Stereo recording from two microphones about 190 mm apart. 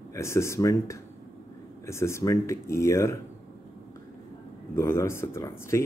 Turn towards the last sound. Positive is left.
turn(degrees=15)  # may be behind; listen again after turning